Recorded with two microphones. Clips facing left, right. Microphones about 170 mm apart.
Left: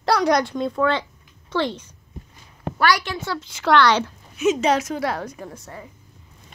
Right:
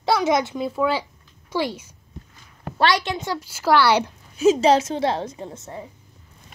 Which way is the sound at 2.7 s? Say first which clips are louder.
Right 1 dB; 25° right (ahead or behind).